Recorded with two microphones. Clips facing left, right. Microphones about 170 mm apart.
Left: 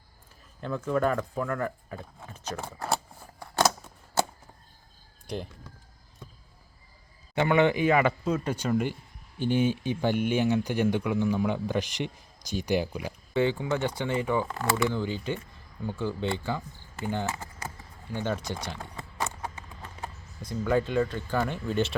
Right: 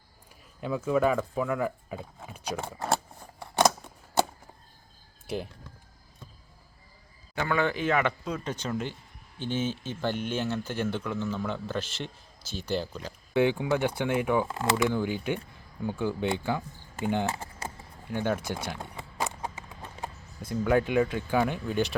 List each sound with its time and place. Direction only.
0.6 s speech: 10° right (ahead or behind)
5.2 s a sound: 5° right (ahead or behind)
7.3 s speech: 20° left (ahead or behind)
13.3 s speech: 10° right (ahead or behind)
14.4 s speech: 20° right (ahead or behind)
17.2 s typing: 30° right (ahead or behind)
18.1 s speech: 10° right (ahead or behind)
18.8 s a sound: 15° right (ahead or behind)
20.7 s speech: 10° right (ahead or behind)